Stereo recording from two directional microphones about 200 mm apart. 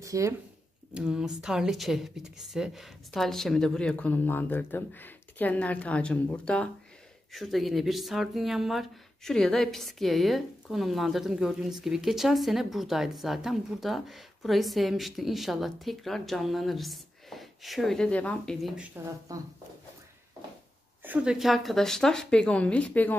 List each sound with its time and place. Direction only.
0.0 s a sound: 15° right (ahead or behind)
0.9 s speech: 5° right (ahead or behind)
19.3 s speech: 15° right (ahead or behind)
21.0 s speech: 5° right (ahead or behind)